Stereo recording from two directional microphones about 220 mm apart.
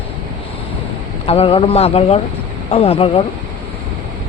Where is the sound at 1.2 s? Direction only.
25° left (ahead or behind).